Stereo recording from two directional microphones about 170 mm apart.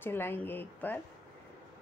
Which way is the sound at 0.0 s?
15° left (ahead or behind).